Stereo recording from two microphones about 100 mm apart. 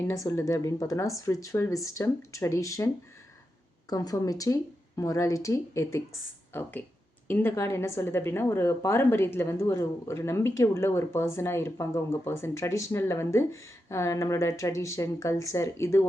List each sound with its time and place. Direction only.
0.1 s a woman's voice: 35° left (ahead or behind)